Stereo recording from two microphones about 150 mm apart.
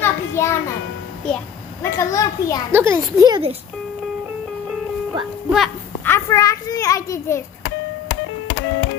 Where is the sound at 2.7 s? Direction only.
15° right (ahead or behind).